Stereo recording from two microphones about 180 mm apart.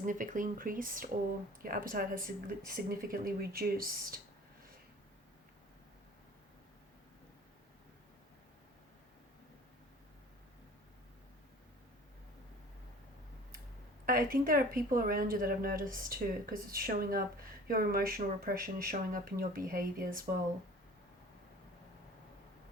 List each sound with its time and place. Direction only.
0.0 s a woman's voice: 45° right (ahead or behind)
14.0 s a woman's voice: 50° right (ahead or behind)